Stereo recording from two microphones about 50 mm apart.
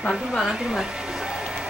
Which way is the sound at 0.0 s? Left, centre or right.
Centre.